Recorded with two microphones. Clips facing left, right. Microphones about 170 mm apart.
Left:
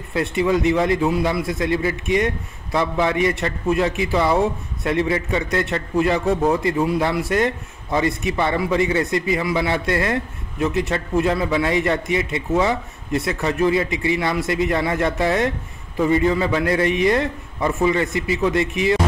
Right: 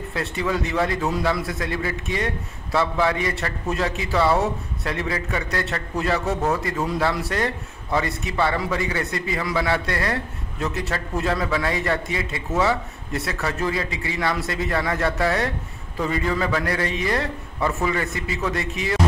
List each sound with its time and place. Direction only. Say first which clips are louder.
0.1 s a man's voice: left 7 dB; 20° left (ahead or behind)